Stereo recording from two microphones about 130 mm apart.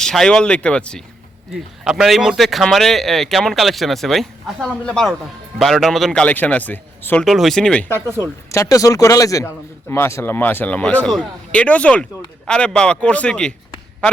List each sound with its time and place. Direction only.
0.0 s speech: 5° left (ahead or behind)
1.8 s speech: 5° right (ahead or behind); by 7.3 s 15° left (ahead or behind)
7.3 s speech: centre (ahead or behind)
8.1 s speech: 20° left (ahead or behind)